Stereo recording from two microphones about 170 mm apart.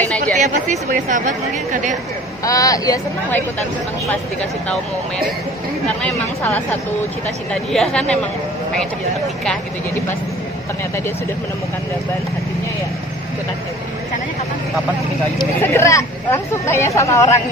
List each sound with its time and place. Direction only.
0.4 s a woman's voice: 45° right (ahead or behind)
2.4 s speech: 20° left (ahead or behind)
6.0 s speech: 15° left (ahead or behind)
7.7 s speech: 5° left (ahead or behind)
15.6 s speech: 15° left (ahead or behind)